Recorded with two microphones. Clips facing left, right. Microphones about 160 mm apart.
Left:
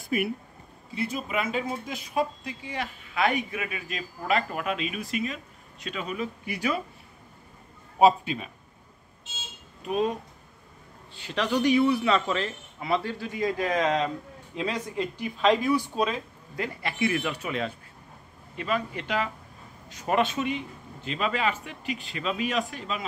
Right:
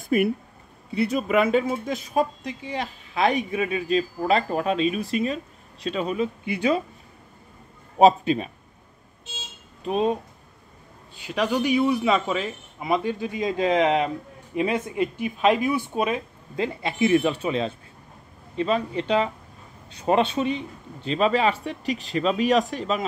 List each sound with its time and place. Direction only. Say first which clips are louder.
0.1 s speech: right 6 dB; 45° right (ahead or behind)
0.9 s speech: right 8 dB; 65° right (ahead or behind); by 2.2 s 50° right (ahead or behind)
2.6 s speech: right 3 dB; 30° right (ahead or behind)
9.8 s speech: right 4 dB; 25° right (ahead or behind)
11.1 s a man's voice: right 3 dB; 10° right (ahead or behind)
15.3 s speech: right 1 dB; 10° right (ahead or behind); by 23.0 s 40° right (ahead or behind)